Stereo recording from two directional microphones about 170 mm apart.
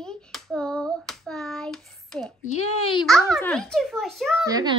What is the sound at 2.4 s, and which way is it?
Speech, 40° left (ahead or behind).